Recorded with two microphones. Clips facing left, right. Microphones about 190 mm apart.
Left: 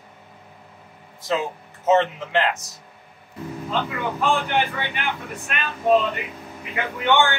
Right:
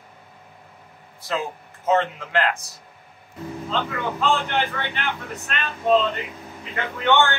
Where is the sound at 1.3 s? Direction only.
20° left (ahead or behind).